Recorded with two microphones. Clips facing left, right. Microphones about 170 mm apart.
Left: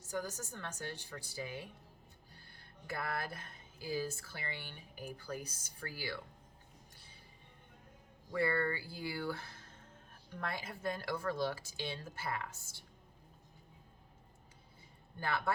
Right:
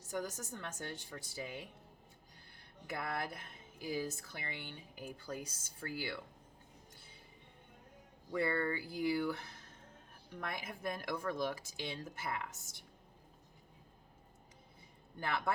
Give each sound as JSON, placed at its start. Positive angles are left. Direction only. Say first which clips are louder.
{"t": 0.1, "sound": "a woman's voice", "louder": "even", "side_deg": -20}
{"t": 8.3, "sound": "a woman's voice", "louder": "left 1 dB", "side_deg": -20}
{"t": 15.2, "sound": "a woman's voice", "louder": "left 1 dB", "side_deg": -20}